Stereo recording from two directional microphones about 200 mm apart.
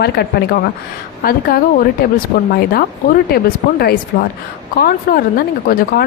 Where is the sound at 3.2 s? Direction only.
50° left (ahead or behind).